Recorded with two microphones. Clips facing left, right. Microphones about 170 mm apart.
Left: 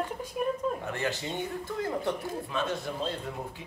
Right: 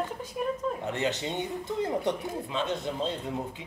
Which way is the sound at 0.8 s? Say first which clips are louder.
Right 3 dB; 20° right (ahead or behind).